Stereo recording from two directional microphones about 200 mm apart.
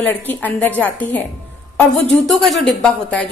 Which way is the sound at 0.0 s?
10° left (ahead or behind).